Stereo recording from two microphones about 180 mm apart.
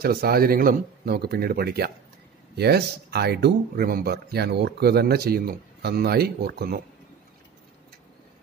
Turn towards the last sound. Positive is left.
turn(degrees=-60)  # may be behind; listen again after turning